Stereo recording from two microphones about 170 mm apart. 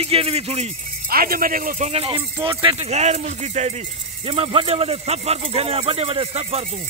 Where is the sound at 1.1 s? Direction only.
60° right (ahead or behind); by 6.8 s 40° right (ahead or behind).